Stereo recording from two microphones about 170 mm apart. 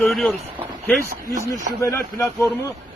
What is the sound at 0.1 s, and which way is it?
Speech, centre (ahead or behind).